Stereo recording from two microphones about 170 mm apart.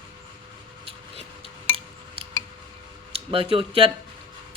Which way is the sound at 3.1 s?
35° right (ahead or behind).